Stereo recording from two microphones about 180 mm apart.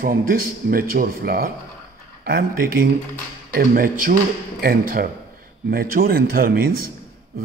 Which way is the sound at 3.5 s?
55° right (ahead or behind).